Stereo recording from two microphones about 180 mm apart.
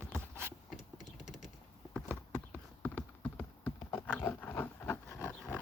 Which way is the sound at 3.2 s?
10° left (ahead or behind).